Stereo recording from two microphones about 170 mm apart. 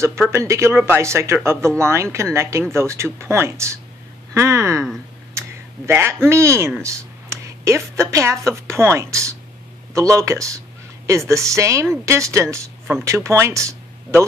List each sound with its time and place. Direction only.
0.0 s speech: 15° right (ahead or behind)
5.9 s speech: 15° right (ahead or behind)